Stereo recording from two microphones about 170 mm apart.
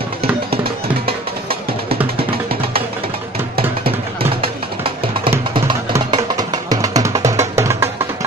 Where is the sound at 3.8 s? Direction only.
35° right (ahead or behind).